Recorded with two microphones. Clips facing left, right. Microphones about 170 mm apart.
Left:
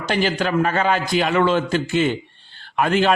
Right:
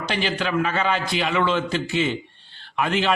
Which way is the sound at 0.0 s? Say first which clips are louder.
Left 4 dB; 45° left (ahead or behind).